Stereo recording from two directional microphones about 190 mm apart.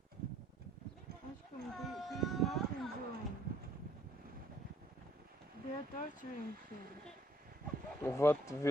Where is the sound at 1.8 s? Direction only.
Centre (ahead or behind).